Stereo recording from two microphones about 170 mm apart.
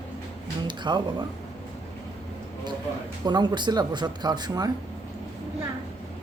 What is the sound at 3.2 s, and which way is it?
Speech, 25° right (ahead or behind).